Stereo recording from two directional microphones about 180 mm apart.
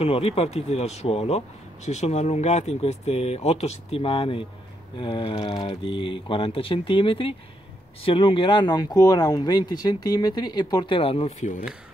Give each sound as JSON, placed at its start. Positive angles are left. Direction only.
{"t": 0.0, "sound": "a man's voice", "side_deg": 35}